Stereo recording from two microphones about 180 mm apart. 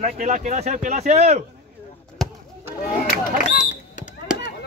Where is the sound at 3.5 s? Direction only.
45° left (ahead or behind).